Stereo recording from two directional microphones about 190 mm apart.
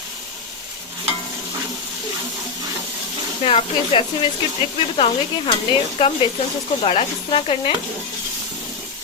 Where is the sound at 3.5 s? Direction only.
30° left (ahead or behind).